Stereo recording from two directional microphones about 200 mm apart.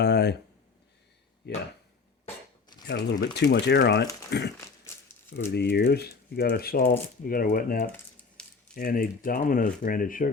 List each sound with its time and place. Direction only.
0.0 s speech: 55° left (ahead or behind)
1.5 s speech: 55° left (ahead or behind)
2.2 s a sound: 20° left (ahead or behind)
2.8 s speech: 55° left (ahead or behind)
5.5 s speech: 55° left (ahead or behind)
8.4 s a sound: 5° left (ahead or behind)
8.7 s speech: 45° left (ahead or behind)